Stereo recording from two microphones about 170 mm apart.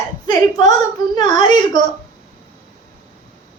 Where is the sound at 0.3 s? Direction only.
20° left (ahead or behind).